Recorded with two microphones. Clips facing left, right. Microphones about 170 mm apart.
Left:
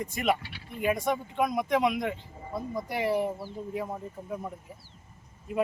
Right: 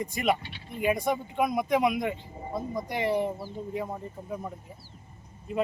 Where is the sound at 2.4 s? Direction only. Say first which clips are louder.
Right 1 dB; 20° right (ahead or behind).